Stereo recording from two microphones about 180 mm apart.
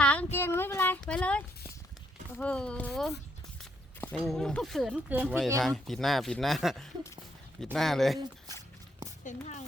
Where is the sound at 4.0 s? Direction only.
10° left (ahead or behind).